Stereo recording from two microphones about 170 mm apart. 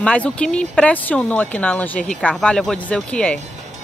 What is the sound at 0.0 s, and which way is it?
Speech, 5° left (ahead or behind).